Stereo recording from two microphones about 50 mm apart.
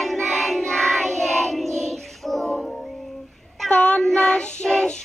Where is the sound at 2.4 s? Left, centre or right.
Centre.